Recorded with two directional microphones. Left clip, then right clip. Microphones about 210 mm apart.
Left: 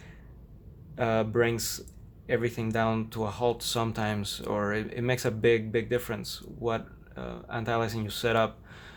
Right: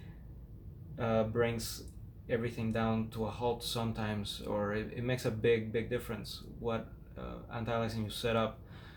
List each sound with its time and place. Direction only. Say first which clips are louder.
0.9 s speech: left 6 dB; 50° left (ahead or behind)